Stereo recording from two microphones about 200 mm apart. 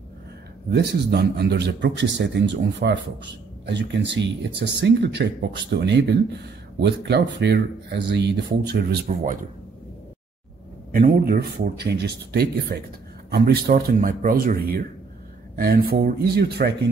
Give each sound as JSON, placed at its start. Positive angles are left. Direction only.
{"t": 0.7, "sound": "speech", "side_deg": -55}
{"t": 9.0, "sound": "speech", "side_deg": -40}
{"t": 10.9, "sound": "speech", "side_deg": -45}